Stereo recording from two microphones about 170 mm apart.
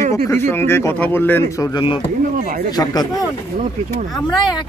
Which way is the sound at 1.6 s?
25° left (ahead or behind).